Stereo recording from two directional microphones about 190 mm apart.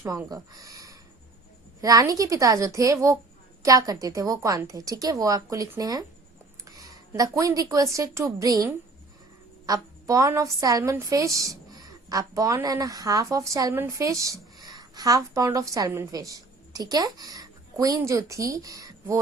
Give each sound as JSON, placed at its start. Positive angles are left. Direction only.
{"t": 0.0, "sound": "a woman's voice", "side_deg": -15}